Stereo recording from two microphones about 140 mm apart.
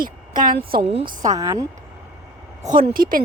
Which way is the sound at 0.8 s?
45° right (ahead or behind).